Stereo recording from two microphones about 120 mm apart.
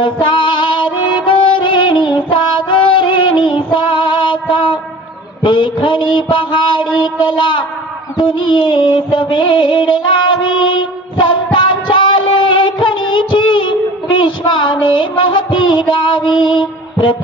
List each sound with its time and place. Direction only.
0.0 s music: 40° left (ahead or behind)
3.4 s child singing: 40° left (ahead or behind)
5.4 s a sound: 40° left (ahead or behind)
11.1 s music: 40° left (ahead or behind)